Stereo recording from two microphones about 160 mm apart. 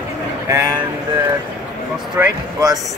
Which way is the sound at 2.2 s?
15° right (ahead or behind).